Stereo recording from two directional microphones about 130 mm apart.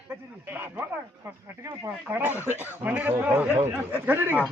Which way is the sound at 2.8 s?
15° right (ahead or behind).